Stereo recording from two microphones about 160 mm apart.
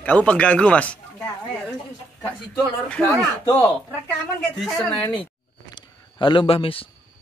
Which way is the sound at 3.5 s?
15° left (ahead or behind).